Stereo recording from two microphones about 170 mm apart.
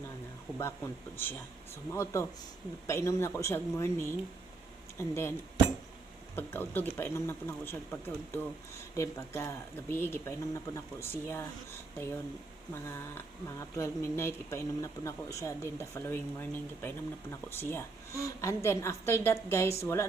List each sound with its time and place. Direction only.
0.6 s speech: 10° left (ahead or behind)
6.3 s speech: 10° left (ahead or behind)
12.7 s speech: 15° left (ahead or behind)